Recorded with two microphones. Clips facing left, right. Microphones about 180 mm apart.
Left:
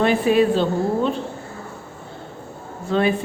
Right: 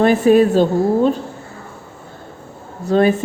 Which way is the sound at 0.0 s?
45° right (ahead or behind).